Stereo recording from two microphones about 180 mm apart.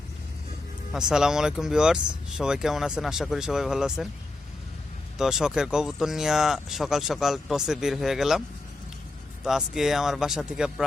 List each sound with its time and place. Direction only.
0.9 s speech: 5° right (ahead or behind)
5.1 s speech: 5° right (ahead or behind)